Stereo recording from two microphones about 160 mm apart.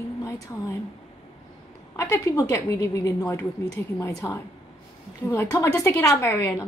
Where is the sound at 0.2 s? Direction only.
20° left (ahead or behind).